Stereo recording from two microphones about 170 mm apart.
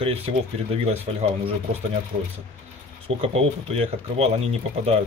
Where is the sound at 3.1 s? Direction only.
35° right (ahead or behind).